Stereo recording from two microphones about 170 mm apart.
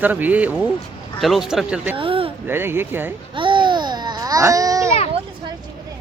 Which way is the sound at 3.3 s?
30° right (ahead or behind).